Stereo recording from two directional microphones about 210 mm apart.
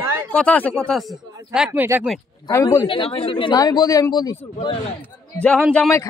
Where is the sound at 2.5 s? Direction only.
10° left (ahead or behind).